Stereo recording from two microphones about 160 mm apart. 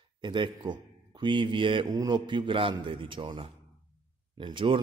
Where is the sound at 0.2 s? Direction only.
30° right (ahead or behind).